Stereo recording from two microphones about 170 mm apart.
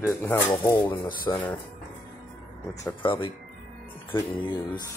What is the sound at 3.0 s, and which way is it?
Speech, 30° left (ahead or behind).